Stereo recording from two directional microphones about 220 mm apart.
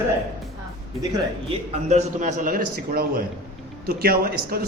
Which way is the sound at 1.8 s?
30° right (ahead or behind).